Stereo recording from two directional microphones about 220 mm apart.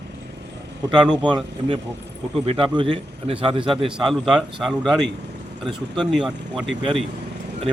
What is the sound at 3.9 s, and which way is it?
Speech, centre (ahead or behind).